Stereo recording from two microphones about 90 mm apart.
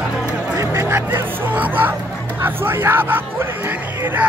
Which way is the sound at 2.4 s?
25° right (ahead or behind).